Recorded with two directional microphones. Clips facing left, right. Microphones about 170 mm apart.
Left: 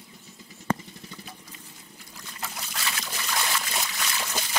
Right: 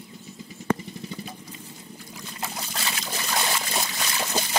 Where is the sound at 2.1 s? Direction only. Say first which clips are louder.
Right 4 dB; 25° right (ahead or behind).